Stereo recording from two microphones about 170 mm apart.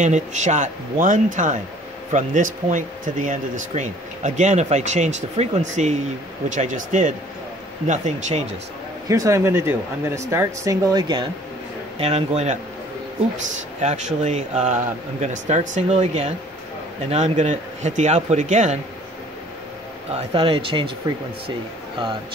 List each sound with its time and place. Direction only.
0.0 s speech: 45° right (ahead or behind)
9.1 s speech: 20° right (ahead or behind)
12.0 s speech: 35° right (ahead or behind)
13.7 s speech: 45° right (ahead or behind)
20.1 s speech: 35° right (ahead or behind)